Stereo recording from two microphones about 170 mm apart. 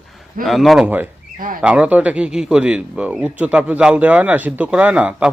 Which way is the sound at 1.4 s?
55° right (ahead or behind).